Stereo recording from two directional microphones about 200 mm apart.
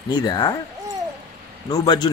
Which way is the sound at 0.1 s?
20° left (ahead or behind).